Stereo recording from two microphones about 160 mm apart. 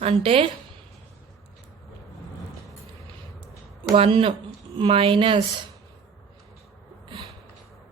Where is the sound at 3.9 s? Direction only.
35° right (ahead or behind).